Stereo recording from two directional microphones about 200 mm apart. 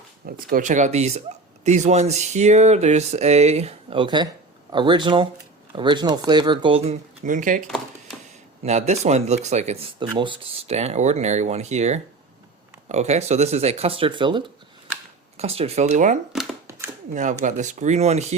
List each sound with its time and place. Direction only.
0.3 s speech: 45° right (ahead or behind)
8.6 s speech: 35° right (ahead or behind)
16.6 s chopping: 15° right (ahead or behind)
17.4 s speech: 35° right (ahead or behind)